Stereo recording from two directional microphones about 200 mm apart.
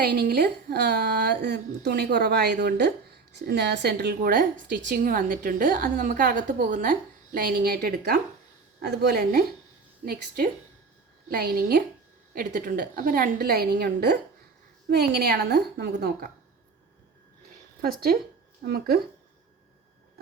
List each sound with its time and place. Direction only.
0.0 s a woman's voice: 55° right (ahead or behind)
17.8 s a woman's voice: 50° right (ahead or behind)